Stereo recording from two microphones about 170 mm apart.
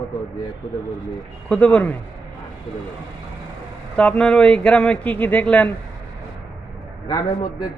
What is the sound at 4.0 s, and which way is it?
A man's voice, 5° left (ahead or behind).